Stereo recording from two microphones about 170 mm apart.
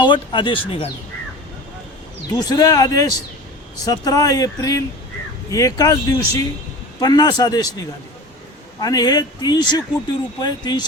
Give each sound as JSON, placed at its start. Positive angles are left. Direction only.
{"t": 0.0, "sound": "speech", "side_deg": 30}
{"t": 2.3, "sound": "speech", "side_deg": 20}
{"t": 8.8, "sound": "speech", "side_deg": 20}